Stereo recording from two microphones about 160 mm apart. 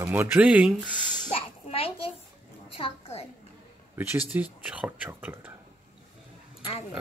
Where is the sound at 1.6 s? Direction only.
35° left (ahead or behind).